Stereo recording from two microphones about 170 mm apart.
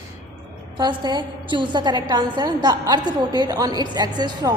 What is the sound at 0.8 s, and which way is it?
A woman's voice, 25° right (ahead or behind).